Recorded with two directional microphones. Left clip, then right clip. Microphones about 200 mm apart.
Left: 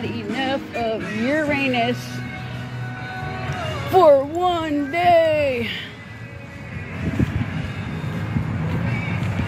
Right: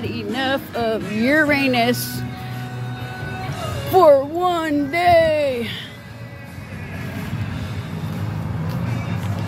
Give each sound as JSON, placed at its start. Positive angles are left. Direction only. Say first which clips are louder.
{"t": 0.3, "sound": "music", "louder": "right 2 dB", "side_deg": -15}
{"t": 1.2, "sound": "speech", "louder": "right 5 dB", "side_deg": -35}
{"t": 3.9, "sound": "speech", "louder": "right 1 dB", "side_deg": -5}